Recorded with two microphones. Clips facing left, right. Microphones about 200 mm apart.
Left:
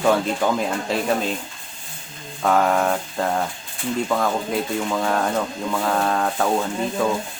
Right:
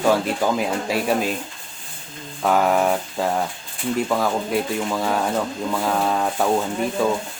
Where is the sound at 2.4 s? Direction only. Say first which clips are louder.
Even; 5° right (ahead or behind).